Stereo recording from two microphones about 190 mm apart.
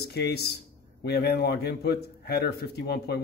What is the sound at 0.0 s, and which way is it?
Speech, 60° left (ahead or behind).